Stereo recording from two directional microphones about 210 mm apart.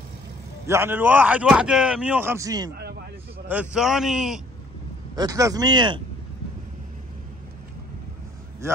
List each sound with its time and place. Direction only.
0.7 s speech: 10° right (ahead or behind)
3.4 s speech: 5° right (ahead or behind)
5.1 s speech: 15° right (ahead or behind)